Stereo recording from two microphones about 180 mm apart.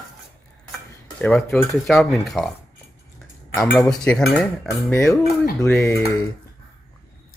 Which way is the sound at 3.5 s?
10° left (ahead or behind).